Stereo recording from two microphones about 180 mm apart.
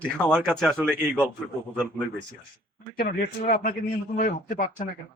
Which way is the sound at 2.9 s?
55° left (ahead or behind).